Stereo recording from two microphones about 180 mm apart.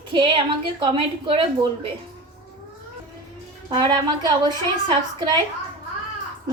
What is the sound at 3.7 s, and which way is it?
A woman's voice, 25° right (ahead or behind).